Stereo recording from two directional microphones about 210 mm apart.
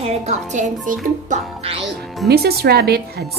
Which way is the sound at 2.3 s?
50° right (ahead or behind).